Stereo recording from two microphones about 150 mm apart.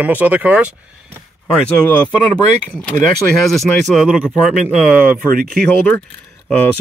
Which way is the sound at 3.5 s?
Centre (ahead or behind).